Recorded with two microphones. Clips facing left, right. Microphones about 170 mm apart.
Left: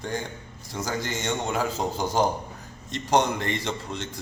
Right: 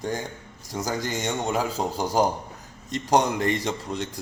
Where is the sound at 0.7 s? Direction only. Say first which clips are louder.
Right 2 dB; 40° right (ahead or behind).